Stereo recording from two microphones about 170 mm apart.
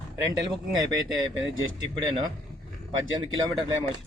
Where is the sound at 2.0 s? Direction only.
25° right (ahead or behind).